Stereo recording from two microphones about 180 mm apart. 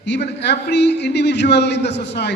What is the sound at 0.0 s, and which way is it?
A man's voice, 70° left (ahead or behind).